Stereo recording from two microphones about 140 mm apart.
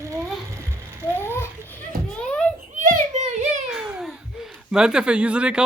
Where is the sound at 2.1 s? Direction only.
5° left (ahead or behind).